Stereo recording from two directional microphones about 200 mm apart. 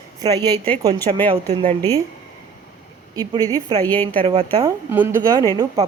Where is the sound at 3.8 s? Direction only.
10° left (ahead or behind).